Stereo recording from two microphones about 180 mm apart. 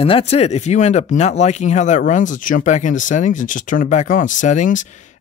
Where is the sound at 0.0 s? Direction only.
35° left (ahead or behind).